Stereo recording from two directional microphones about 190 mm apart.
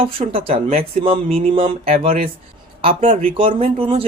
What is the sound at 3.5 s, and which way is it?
Speech, 30° right (ahead or behind).